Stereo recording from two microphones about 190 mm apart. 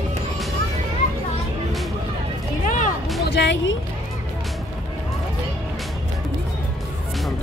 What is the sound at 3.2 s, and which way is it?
Music, 65° left (ahead or behind).